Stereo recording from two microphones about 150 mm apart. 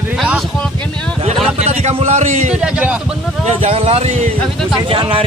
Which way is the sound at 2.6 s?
5° right (ahead or behind).